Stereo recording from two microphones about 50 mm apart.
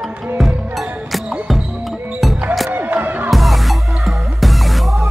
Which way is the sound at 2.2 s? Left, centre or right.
Centre.